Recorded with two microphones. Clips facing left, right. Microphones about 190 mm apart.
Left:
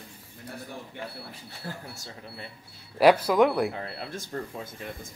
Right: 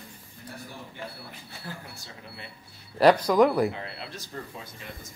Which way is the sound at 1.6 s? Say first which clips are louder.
Left 2 dB; 40° left (ahead or behind).